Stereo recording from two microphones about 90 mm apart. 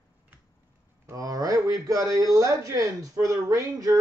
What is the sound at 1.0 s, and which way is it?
A man's voice, 40° right (ahead or behind).